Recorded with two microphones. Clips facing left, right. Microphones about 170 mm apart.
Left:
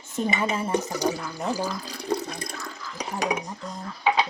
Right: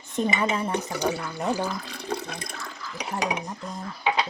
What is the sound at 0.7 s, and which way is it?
Speech, 40° left (ahead or behind).